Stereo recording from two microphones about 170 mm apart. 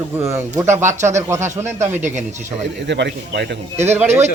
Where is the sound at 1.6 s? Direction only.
45° right (ahead or behind).